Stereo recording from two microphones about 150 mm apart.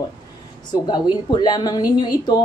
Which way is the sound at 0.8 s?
30° left (ahead or behind).